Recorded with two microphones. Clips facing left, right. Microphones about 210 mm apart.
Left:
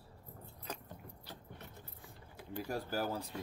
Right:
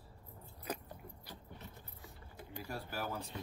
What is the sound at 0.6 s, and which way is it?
Keys jangling, 10° right (ahead or behind).